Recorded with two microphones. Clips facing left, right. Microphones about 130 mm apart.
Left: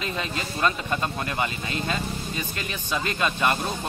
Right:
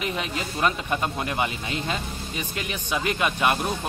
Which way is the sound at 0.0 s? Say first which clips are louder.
Right 1 dB; 15° right (ahead or behind).